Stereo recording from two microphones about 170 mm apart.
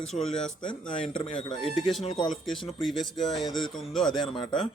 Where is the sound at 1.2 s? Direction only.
30° left (ahead or behind).